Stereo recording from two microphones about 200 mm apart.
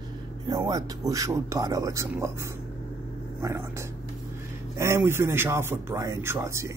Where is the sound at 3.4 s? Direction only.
15° right (ahead or behind).